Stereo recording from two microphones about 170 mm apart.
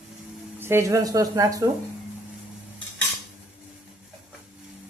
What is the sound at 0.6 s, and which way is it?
Speech, 15° right (ahead or behind).